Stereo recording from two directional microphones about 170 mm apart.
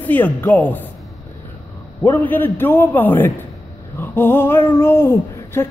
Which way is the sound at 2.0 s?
10° left (ahead or behind).